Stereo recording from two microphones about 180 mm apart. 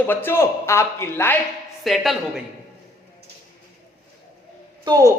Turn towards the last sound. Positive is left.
turn(degrees=-20)  # may be behind; listen again after turning